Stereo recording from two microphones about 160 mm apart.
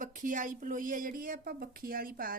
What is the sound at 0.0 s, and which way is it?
Speech, 55° right (ahead or behind).